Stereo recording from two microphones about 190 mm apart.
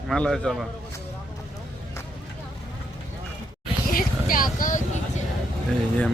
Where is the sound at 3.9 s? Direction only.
50° left (ahead or behind).